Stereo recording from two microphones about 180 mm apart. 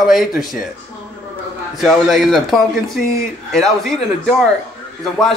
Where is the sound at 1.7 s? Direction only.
Centre (ahead or behind).